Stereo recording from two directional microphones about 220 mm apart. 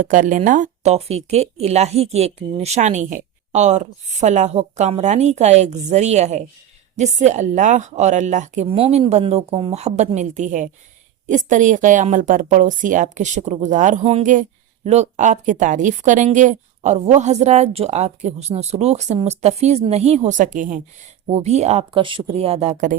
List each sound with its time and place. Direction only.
0.0 s a woman's voice: 35° right (ahead or behind)